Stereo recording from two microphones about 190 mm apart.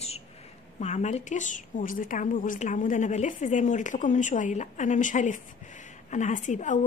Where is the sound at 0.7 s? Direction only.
35° left (ahead or behind).